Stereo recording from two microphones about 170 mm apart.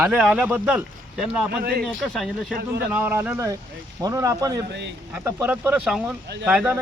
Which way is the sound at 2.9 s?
10° right (ahead or behind).